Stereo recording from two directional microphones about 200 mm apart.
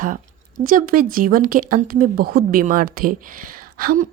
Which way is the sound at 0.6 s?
45° right (ahead or behind).